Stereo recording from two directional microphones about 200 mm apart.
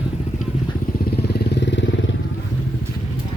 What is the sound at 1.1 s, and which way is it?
Vehicle, 60° left (ahead or behind).